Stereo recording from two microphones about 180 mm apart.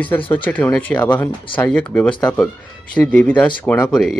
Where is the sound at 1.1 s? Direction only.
25° left (ahead or behind).